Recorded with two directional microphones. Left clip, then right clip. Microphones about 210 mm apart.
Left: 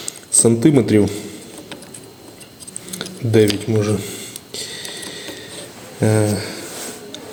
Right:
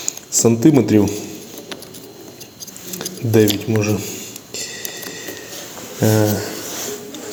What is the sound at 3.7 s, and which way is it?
Speech, 10° left (ahead or behind).